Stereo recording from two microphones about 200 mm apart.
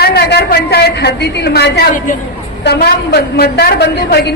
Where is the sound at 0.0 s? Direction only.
55° left (ahead or behind).